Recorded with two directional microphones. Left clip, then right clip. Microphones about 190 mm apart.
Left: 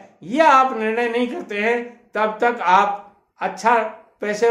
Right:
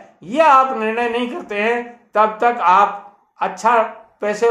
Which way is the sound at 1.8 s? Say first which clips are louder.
Right 6 dB; 20° left (ahead or behind).